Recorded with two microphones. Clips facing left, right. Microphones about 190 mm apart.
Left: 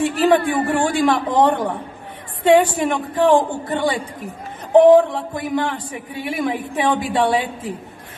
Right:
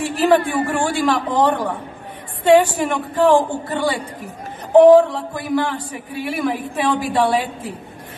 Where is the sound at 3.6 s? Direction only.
20° left (ahead or behind).